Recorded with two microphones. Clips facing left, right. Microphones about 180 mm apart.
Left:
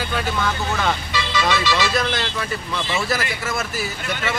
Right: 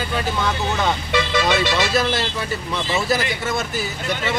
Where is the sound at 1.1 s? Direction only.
55° right (ahead or behind).